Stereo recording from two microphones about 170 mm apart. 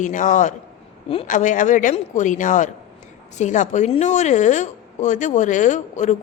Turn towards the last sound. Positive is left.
turn(degrees=45)  # may be behind; listen again after turning